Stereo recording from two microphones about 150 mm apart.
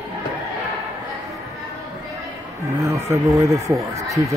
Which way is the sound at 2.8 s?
20° right (ahead or behind).